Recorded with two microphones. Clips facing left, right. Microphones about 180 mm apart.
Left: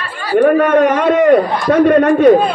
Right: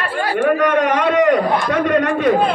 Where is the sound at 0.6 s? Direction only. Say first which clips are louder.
Left 5 dB; 45° left (ahead or behind).